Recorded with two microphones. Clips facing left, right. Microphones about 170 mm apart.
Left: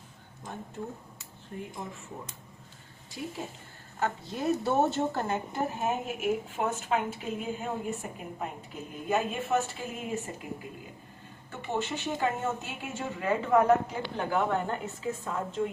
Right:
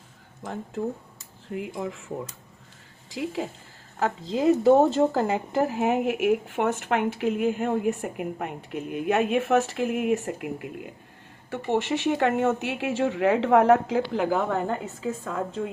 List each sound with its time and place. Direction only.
1.5 s speech: 90° right
3.1 s speech: 90° right